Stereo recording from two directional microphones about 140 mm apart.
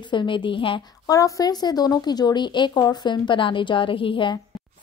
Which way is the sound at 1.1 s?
25° left (ahead or behind).